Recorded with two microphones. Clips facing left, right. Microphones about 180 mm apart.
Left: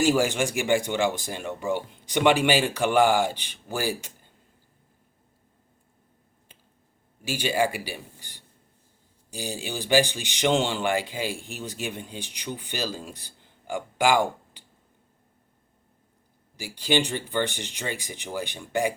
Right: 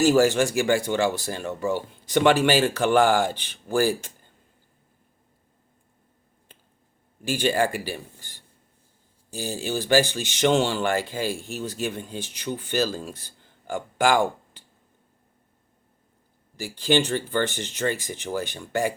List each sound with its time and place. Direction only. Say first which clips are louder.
0.0 s speech: right 4 dB; 15° left (ahead or behind)
7.4 s speech: right 2 dB; 10° left (ahead or behind)
16.6 s speech: right 4 dB; 45° right (ahead or behind)
16.8 s speech: right 3 dB; 10° left (ahead or behind)